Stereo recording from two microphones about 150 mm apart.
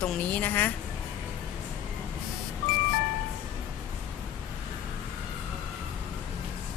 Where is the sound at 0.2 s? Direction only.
10° left (ahead or behind).